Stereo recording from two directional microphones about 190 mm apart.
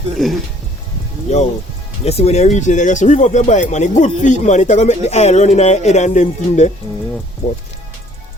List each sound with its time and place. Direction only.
1.3 s speech: 35° left (ahead or behind)